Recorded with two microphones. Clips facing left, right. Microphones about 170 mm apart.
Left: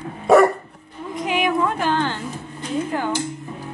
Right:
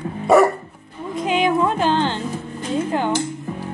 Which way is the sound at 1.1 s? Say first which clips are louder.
Right 3 dB; 25° right (ahead or behind).